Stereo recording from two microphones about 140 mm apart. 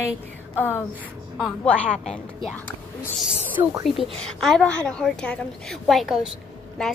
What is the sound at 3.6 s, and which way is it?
Speech, 25° right (ahead or behind).